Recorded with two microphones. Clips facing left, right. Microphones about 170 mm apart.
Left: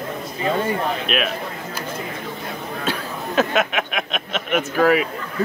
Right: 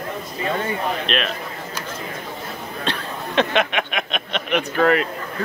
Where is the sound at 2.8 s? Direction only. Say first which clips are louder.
Left 1 dB; 5° left (ahead or behind).